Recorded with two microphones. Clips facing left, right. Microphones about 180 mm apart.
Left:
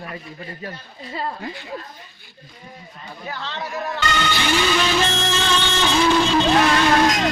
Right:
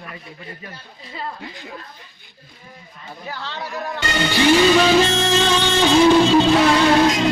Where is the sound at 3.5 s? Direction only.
Centre (ahead or behind).